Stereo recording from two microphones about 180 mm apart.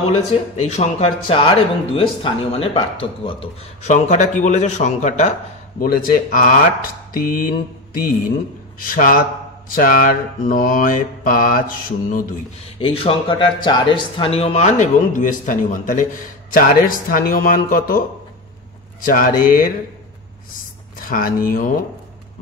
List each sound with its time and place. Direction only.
0.3 s speech: 35° left (ahead or behind)
5.8 s speech: 55° left (ahead or behind)
7.2 s mantra: 50° left (ahead or behind)
8.7 s speech: 50° left (ahead or behind)
12.7 s speech: 30° left (ahead or behind); by 18.0 s 50° left (ahead or behind)
19.0 s speech: 50° left (ahead or behind)
21.0 s speech: 50° left (ahead or behind)